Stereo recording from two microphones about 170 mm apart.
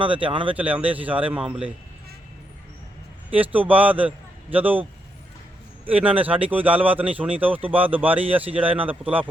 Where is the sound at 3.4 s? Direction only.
10° right (ahead or behind).